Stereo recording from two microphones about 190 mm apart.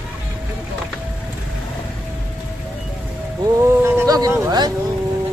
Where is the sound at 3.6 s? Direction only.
10° right (ahead or behind).